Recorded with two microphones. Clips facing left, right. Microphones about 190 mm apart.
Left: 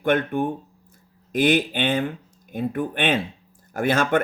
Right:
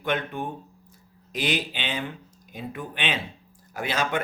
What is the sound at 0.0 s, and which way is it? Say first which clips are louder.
Speech: left 7 dB; 50° left (ahead or behind).